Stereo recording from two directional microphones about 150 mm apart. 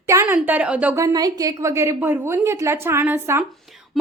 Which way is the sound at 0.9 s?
25° right (ahead or behind).